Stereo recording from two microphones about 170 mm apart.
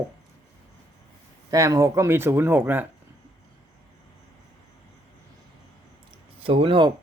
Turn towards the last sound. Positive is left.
turn(degrees=-30)  # may be behind; listen again after turning